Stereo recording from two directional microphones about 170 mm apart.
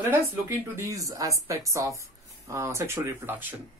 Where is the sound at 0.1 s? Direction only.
15° right (ahead or behind).